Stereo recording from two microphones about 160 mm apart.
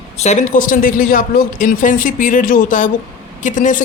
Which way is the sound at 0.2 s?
50° left (ahead or behind).